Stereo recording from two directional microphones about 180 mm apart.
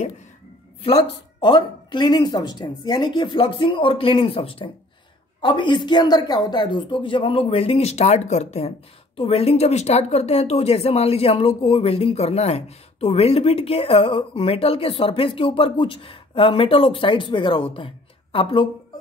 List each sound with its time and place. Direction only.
0.8 s speech: 30° left (ahead or behind)